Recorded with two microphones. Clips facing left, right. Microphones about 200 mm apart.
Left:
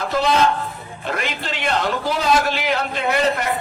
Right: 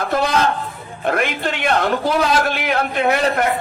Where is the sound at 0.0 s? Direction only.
55° right (ahead or behind).